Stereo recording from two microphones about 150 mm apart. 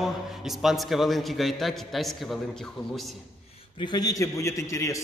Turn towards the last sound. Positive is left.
turn(degrees=20)  # may be behind; listen again after turning